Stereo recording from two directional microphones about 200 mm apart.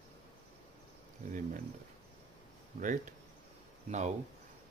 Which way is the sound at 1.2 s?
40° right (ahead or behind).